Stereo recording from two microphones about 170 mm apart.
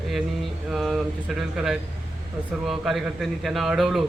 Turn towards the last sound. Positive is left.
turn(degrees=0)  # may be behind; listen again after turning